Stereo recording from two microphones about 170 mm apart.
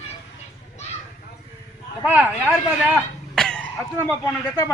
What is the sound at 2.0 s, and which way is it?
Speech, 5° right (ahead or behind).